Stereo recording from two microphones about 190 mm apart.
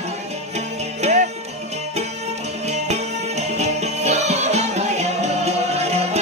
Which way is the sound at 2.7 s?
35° right (ahead or behind).